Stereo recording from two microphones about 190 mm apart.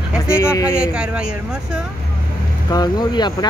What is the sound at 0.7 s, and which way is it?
Speech, 5° right (ahead or behind).